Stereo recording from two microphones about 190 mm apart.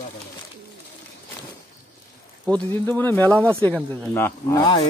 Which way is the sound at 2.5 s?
10° left (ahead or behind).